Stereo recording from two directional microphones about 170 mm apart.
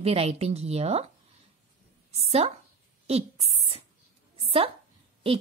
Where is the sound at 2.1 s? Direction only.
35° right (ahead or behind).